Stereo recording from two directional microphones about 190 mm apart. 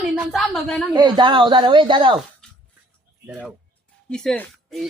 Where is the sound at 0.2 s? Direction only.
Centre (ahead or behind).